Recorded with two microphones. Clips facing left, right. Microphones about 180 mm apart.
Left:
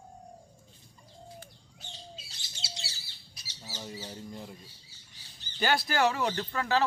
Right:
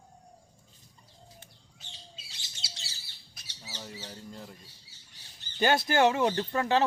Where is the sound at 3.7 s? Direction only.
10° left (ahead or behind).